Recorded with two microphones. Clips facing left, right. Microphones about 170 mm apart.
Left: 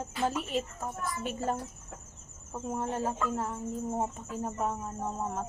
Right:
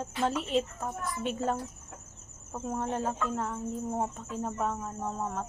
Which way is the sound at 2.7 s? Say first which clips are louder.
Even; 10° left (ahead or behind).